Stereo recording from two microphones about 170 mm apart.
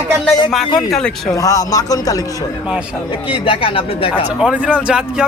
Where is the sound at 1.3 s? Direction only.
20° left (ahead or behind).